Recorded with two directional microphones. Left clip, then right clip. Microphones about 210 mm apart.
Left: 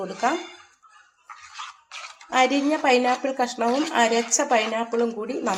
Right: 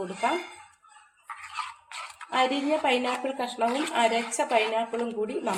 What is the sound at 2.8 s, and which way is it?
A woman's voice, 25° left (ahead or behind).